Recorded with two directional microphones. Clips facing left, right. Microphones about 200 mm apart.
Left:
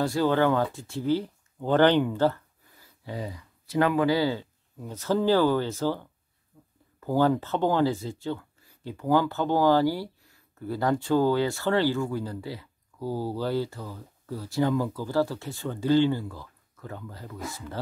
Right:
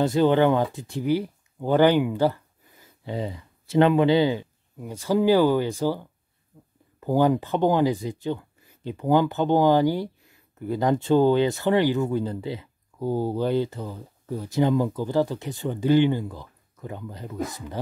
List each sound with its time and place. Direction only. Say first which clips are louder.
0.0 s speech: right 4 dB; 20° right (ahead or behind)
6.5 s a sound: right 3 dB; 20° right (ahead or behind)
7.0 s speech: right 3 dB; 15° right (ahead or behind)